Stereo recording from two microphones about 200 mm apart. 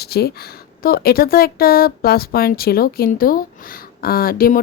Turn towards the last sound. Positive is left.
turn(degrees=45)  # may be behind; listen again after turning